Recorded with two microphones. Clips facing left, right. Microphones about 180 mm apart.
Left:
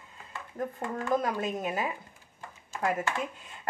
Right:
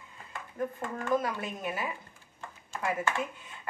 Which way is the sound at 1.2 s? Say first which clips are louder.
Left 4 dB; 40° left (ahead or behind).